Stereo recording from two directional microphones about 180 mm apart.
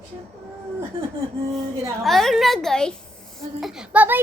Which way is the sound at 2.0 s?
Centre (ahead or behind).